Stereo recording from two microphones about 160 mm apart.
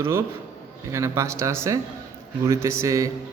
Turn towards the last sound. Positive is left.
turn(degrees=-20)  # may be behind; listen again after turning